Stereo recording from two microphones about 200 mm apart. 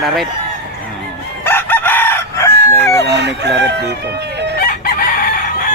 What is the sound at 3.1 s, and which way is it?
Speech, 55° right (ahead or behind).